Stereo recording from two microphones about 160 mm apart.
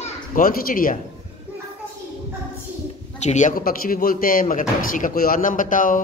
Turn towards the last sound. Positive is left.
turn(degrees=55)  # may be behind; listen again after turning